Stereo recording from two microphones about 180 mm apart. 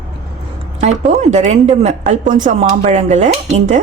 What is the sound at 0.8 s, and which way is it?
Speech, 40° right (ahead or behind).